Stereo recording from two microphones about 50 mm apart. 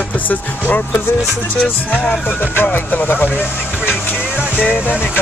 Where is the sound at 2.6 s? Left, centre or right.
Left.